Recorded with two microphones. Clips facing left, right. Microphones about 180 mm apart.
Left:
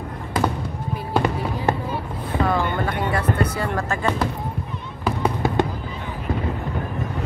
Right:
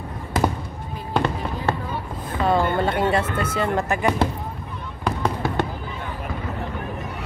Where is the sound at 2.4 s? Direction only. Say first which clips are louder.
Right 3 dB; 25° right (ahead or behind).